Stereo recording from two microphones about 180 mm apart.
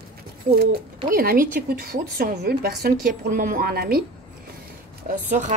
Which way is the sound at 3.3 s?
45° right (ahead or behind).